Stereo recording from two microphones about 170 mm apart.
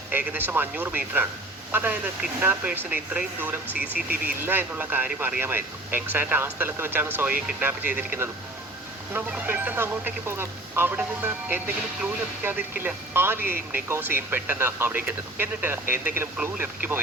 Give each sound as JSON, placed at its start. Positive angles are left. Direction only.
{"t": 0.1, "sound": "speech", "side_deg": -10}
{"t": 3.9, "sound": "speech", "side_deg": -60}
{"t": 4.4, "sound": "speech", "side_deg": -10}